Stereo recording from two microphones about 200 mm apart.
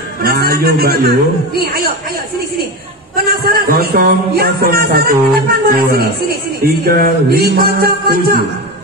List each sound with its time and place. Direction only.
0.2 s a man's voice: 50° right (ahead or behind)
3.3 s a man's voice: 50° right (ahead or behind)